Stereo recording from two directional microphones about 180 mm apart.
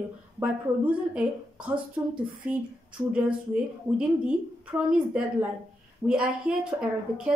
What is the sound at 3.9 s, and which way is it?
A woman's voice, 5° right (ahead or behind).